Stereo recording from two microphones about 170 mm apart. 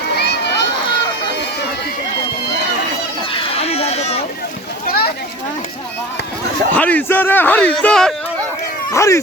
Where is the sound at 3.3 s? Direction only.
35° left (ahead or behind).